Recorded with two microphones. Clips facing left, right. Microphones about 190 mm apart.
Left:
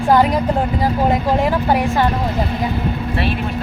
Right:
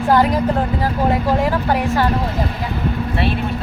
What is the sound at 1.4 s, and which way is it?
Speech, 15° left (ahead or behind).